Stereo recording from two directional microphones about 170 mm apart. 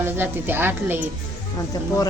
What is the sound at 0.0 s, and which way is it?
A woman's voice, 10° right (ahead or behind).